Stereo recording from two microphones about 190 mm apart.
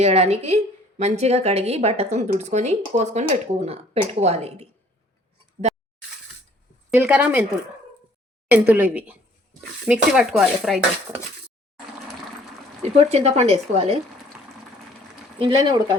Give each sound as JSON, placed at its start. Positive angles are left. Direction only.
{"t": 0.0, "sound": "a woman's voice", "side_deg": -35}
{"t": 6.9, "sound": "speech", "side_deg": -5}
{"t": 8.4, "sound": "speech", "side_deg": -10}
{"t": 12.8, "sound": "a woman's voice", "side_deg": -35}
{"t": 15.4, "sound": "speech", "side_deg": -25}